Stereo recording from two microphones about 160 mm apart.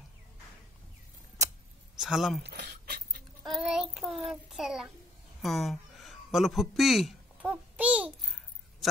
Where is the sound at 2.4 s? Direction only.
90° right.